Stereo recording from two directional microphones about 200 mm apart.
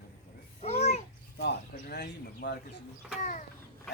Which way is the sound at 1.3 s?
55° left (ahead or behind).